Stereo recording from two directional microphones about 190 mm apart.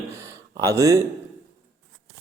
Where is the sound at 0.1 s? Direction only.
15° right (ahead or behind).